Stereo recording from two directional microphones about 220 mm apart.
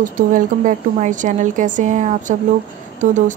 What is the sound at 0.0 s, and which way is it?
A woman's voice, 35° right (ahead or behind).